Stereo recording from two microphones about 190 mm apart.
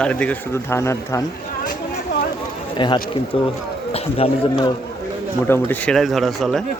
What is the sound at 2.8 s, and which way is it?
A man's voice, 25° left (ahead or behind).